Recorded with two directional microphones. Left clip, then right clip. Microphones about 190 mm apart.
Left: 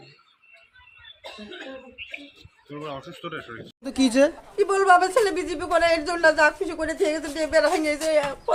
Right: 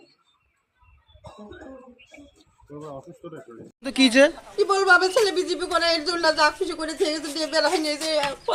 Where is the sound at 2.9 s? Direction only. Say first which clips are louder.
Left 5 dB; 15° right (ahead or behind).